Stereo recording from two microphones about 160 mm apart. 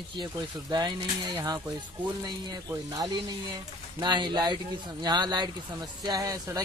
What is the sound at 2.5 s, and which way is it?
Speech, 25° right (ahead or behind).